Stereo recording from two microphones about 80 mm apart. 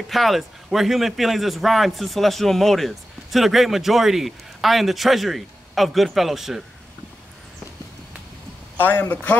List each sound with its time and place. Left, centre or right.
0.1 s a man's voice: centre
8.7 s a man's voice: left